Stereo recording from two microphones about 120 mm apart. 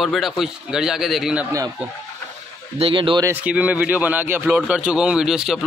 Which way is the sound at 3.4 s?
10° right (ahead or behind).